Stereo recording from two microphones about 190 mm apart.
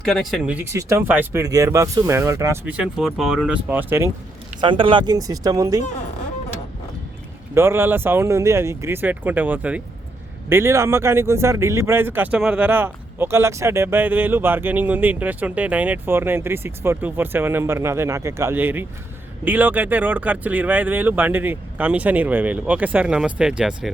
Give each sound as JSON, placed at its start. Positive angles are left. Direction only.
{"t": 0.0, "sound": "speech", "side_deg": 0}
{"t": 4.6, "sound": "speech", "side_deg": -25}
{"t": 7.5, "sound": "speech", "side_deg": -15}